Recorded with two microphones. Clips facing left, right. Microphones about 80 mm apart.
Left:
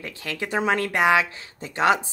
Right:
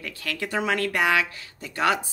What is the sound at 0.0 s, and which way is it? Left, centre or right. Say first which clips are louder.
A woman's voice: left 1 dB; left.